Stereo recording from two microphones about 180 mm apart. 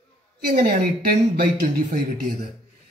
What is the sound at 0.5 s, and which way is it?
Speech, 55° right (ahead or behind).